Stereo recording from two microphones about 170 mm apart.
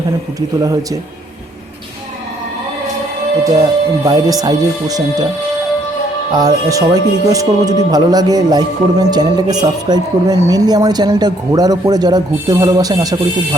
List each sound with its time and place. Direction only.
0.3 s speech: 20° right (ahead or behind)
3.4 s speech: 20° right (ahead or behind)
6.3 s speech: 20° right (ahead or behind)